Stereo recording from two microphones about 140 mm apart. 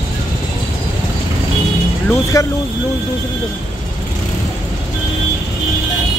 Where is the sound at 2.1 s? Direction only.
20° left (ahead or behind).